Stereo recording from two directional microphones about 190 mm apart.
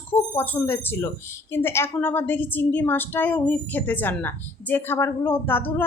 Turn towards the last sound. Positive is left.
turn(degrees=10)  # may be behind; listen again after turning